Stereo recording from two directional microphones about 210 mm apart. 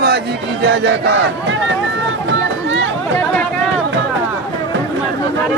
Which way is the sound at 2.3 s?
60° right (ahead or behind).